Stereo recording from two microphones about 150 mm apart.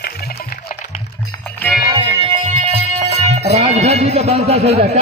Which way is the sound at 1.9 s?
40° right (ahead or behind).